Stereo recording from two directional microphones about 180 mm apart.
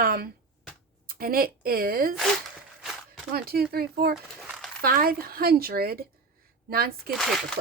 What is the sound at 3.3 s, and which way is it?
A woman's voice, 60° right (ahead or behind).